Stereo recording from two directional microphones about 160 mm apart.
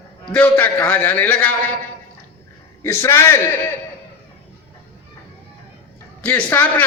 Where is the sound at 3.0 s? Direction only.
15° left (ahead or behind).